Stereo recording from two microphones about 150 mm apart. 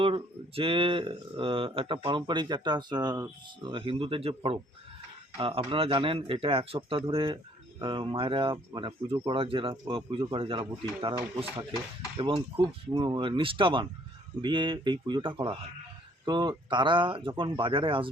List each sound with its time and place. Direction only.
0.0 s speech: 35° right (ahead or behind)